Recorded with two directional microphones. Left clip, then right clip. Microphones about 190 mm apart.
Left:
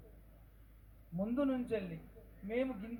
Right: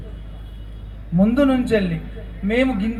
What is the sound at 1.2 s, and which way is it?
Speech, 40° left (ahead or behind).